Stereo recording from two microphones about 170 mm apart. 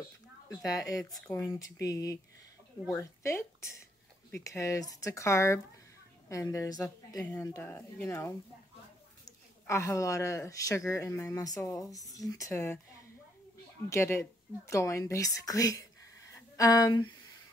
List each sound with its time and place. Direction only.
0.5 s speech: 20° left (ahead or behind)
1.1 s speech: 10° left (ahead or behind)
9.7 s speech: 15° left (ahead or behind)
13.8 s speech: 15° left (ahead or behind)